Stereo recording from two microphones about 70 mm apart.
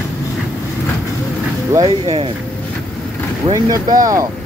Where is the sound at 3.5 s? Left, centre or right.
Right.